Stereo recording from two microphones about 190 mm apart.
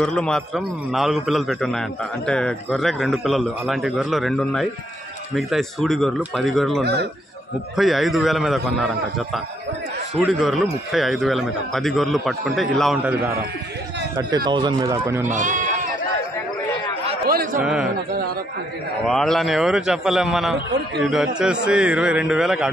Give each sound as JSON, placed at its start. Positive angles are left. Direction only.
{"t": 0.0, "sound": "a man's voice", "side_deg": 5}
{"t": 6.8, "sound": "speech", "side_deg": -60}
{"t": 7.7, "sound": "a man's voice", "side_deg": 0}
{"t": 14.1, "sound": "speech", "side_deg": -20}
{"t": 15.2, "sound": "speech", "side_deg": -40}
{"t": 17.3, "sound": "a sound", "side_deg": -50}
{"t": 19.0, "sound": "a man's voice", "side_deg": 0}